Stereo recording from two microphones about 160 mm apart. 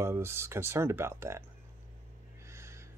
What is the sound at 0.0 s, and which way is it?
Speech, 15° right (ahead or behind).